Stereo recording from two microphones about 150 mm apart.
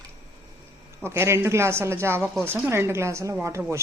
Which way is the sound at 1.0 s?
15° right (ahead or behind).